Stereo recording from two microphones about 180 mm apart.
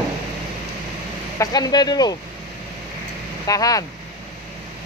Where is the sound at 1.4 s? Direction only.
20° left (ahead or behind).